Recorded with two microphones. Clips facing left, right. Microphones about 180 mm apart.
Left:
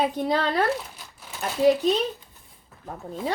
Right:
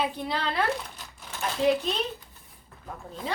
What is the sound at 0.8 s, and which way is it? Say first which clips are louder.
Crumpling: even; 10° left (ahead or behind).